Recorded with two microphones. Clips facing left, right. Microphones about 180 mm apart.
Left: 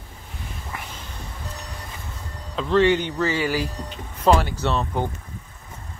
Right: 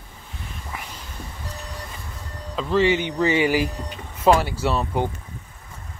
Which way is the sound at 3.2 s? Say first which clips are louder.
Right 3 dB; 20° right (ahead or behind).